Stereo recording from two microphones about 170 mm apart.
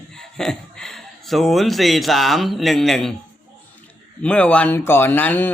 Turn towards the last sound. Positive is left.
turn(degrees=10)  # may be behind; listen again after turning